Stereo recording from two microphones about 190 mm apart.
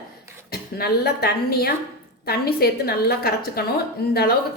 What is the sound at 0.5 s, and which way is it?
A woman's voice, 55° left (ahead or behind).